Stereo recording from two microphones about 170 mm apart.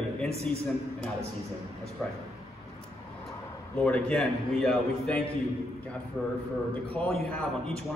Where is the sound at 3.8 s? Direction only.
5° left (ahead or behind).